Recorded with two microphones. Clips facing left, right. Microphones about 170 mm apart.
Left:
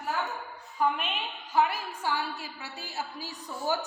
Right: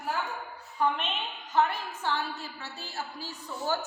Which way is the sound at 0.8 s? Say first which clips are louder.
Even; 10° left (ahead or behind).